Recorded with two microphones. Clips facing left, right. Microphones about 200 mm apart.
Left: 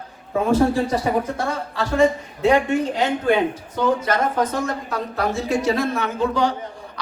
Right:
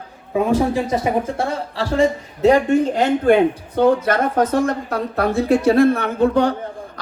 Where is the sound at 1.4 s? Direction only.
30° right (ahead or behind).